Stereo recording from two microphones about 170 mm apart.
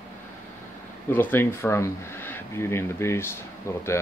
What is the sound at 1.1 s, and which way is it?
Speech, 10° left (ahead or behind).